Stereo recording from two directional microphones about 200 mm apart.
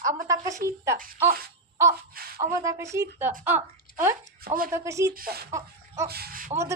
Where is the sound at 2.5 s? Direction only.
15° right (ahead or behind).